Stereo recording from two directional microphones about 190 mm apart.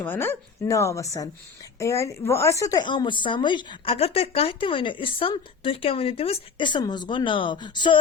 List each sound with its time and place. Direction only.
0.0 s a woman's voice: 10° left (ahead or behind)